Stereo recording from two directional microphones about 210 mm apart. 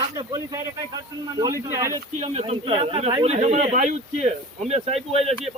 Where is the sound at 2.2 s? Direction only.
30° right (ahead or behind).